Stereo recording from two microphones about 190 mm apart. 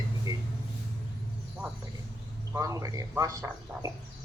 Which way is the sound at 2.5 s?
15° right (ahead or behind).